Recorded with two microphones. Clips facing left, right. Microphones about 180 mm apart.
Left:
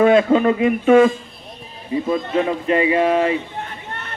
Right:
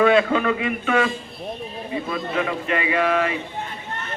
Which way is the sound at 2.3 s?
30° left (ahead or behind).